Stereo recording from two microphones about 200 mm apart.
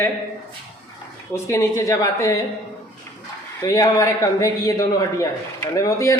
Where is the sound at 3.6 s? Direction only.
15° left (ahead or behind).